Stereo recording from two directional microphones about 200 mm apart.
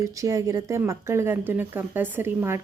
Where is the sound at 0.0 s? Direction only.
15° right (ahead or behind).